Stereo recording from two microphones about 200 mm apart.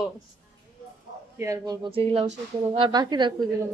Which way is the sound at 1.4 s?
15° right (ahead or behind).